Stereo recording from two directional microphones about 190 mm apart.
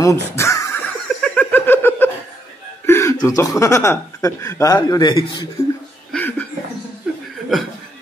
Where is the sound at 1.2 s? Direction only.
10° left (ahead or behind).